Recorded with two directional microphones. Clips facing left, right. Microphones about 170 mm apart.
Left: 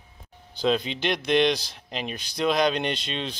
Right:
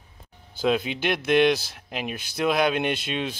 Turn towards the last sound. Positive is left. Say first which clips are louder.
# right 3 dB
turn(degrees=-10)  # may be behind; listen again after turning